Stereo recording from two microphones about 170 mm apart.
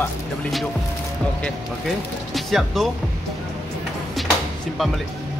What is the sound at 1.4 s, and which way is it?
A man's voice, centre (ahead or behind).